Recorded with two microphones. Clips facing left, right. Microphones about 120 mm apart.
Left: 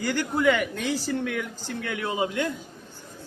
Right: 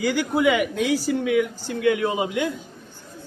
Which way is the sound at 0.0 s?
10° right (ahead or behind).